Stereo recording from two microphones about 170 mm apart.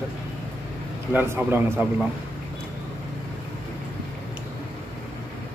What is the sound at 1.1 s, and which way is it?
Speech, 10° right (ahead or behind).